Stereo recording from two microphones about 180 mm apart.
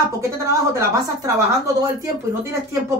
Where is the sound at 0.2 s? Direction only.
15° right (ahead or behind).